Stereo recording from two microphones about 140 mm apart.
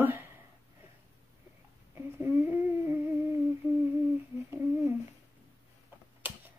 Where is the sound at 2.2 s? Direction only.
15° right (ahead or behind).